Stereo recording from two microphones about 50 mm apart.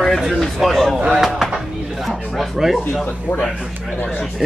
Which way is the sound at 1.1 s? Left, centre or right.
Centre.